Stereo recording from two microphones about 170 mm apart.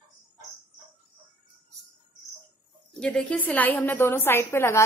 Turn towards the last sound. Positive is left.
turn(degrees=15)  # may be behind; listen again after turning